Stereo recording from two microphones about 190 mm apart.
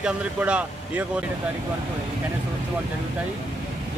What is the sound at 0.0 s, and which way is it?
Speech, 5° right (ahead or behind).